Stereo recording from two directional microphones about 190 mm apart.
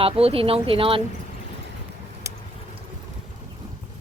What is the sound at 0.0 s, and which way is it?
Speech, 30° right (ahead or behind).